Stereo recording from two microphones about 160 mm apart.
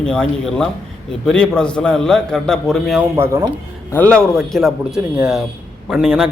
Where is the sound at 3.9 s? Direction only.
10° left (ahead or behind).